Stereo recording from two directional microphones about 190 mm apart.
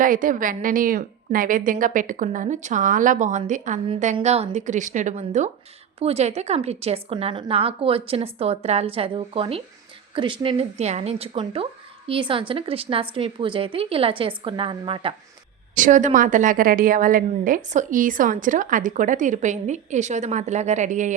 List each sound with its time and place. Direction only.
0.0 s a woman's voice: 45° right (ahead or behind); by 15.1 s 25° right (ahead or behind)
15.8 s a woman's voice: 40° right (ahead or behind)